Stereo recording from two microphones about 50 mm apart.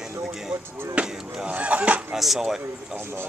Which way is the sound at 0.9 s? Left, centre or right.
Right.